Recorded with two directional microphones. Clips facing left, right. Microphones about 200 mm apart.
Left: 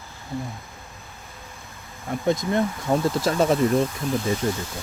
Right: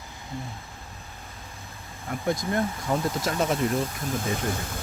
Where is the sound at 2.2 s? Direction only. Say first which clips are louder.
Left 4 dB; 20° left (ahead or behind).